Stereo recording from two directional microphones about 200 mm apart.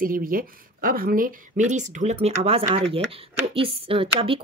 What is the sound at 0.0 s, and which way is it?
Speech, 45° right (ahead or behind).